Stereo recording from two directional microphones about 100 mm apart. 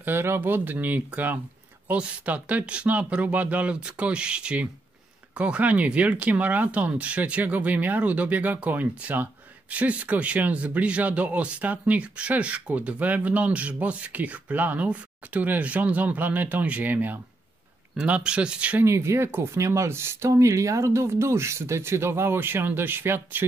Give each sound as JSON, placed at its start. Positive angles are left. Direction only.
{"t": 0.0, "sound": "speech", "side_deg": -25}
{"t": 18.9, "sound": "speech", "side_deg": -25}